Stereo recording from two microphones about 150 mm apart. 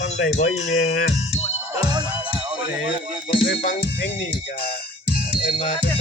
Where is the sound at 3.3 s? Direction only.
35° left (ahead or behind).